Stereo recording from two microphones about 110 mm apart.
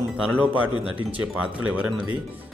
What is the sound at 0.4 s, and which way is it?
Speech, 15° right (ahead or behind).